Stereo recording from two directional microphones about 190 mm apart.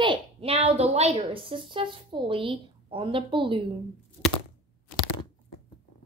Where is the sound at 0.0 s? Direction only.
25° right (ahead or behind).